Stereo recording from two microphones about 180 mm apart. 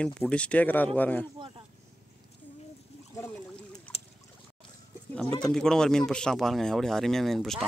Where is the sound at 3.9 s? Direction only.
35° left (ahead or behind).